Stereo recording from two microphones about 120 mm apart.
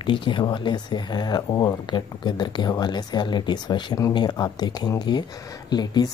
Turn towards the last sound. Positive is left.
turn(degrees=35)  # may be behind; listen again after turning